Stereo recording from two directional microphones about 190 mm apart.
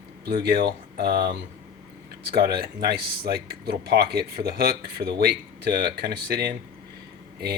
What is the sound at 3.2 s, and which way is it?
Speech, 55° right (ahead or behind).